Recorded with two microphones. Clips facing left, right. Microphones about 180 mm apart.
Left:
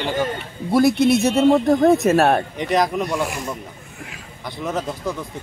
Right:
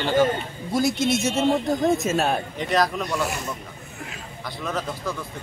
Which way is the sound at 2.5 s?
20° left (ahead or behind).